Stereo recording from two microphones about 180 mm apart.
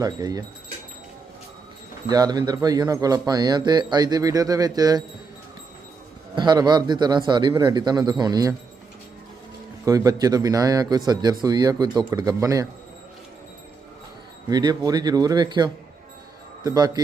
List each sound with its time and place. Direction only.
0.0 s speech: 20° right (ahead or behind)
2.0 s speech: 20° right (ahead or behind)
6.3 s speech: 25° right (ahead or behind)
9.8 s speech: 20° right (ahead or behind)
14.5 s speech: 25° right (ahead or behind)